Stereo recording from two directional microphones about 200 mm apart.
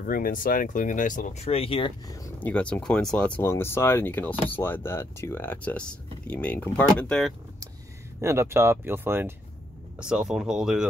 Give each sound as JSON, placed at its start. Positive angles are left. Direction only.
{"t": 0.0, "sound": "speech", "side_deg": 45}
{"t": 2.4, "sound": "speech", "side_deg": 5}
{"t": 8.2, "sound": "speech", "side_deg": -15}